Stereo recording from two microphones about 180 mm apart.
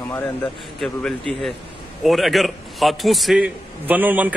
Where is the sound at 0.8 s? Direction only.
5° left (ahead or behind).